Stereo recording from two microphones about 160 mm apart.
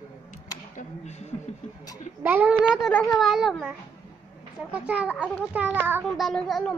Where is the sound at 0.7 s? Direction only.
45° left (ahead or behind).